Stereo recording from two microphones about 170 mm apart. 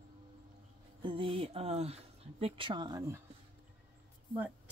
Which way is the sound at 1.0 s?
30° right (ahead or behind).